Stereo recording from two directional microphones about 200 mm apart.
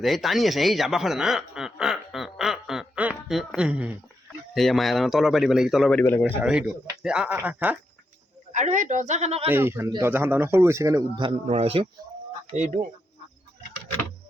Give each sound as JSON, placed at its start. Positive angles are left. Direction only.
{"t": 0.0, "sound": "chuckle", "side_deg": 0}
{"t": 4.5, "sound": "speech", "side_deg": 0}
{"t": 6.2, "sound": "speech", "side_deg": -5}
{"t": 8.5, "sound": "a woman's voice", "side_deg": -40}
{"t": 9.5, "sound": "a man's voice", "side_deg": -10}